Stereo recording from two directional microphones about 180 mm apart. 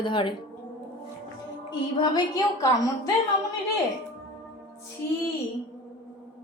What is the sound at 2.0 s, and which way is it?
Speech, 20° left (ahead or behind).